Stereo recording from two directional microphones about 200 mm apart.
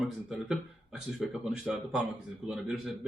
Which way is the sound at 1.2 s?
Centre (ahead or behind).